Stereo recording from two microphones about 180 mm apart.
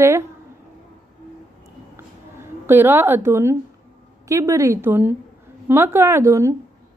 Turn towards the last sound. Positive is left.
turn(degrees=-15)  # may be behind; listen again after turning